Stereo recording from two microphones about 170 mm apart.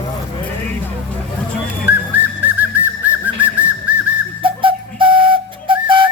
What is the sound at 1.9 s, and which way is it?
Whistling, 10° right (ahead or behind).